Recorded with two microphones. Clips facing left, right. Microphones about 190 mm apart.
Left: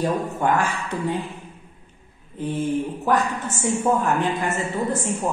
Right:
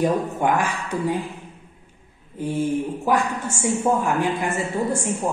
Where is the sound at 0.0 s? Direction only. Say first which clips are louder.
Right 2 dB; 15° right (ahead or behind).